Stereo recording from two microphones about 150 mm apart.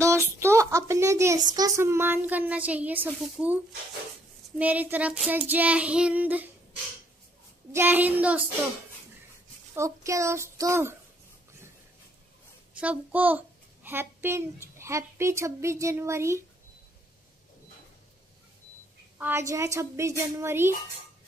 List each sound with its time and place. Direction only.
0.0 s a woman's voice: 20° right (ahead or behind)
3.2 s child singing: 10° right (ahead or behind)
7.7 s child singing: 15° right (ahead or behind)
9.8 s a child's voice: 20° right (ahead or behind)
12.8 s child singing: 10° right (ahead or behind)
13.8 s a child's voice: 15° right (ahead or behind)
19.1 s a child's voice: 15° right (ahead or behind)